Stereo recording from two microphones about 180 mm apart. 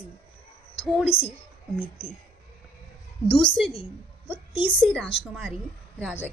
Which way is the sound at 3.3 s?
5° left (ahead or behind).